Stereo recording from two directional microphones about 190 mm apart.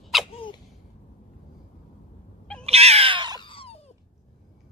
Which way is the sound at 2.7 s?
35° right (ahead or behind).